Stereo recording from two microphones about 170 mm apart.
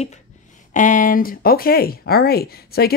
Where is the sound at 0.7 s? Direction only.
50° left (ahead or behind).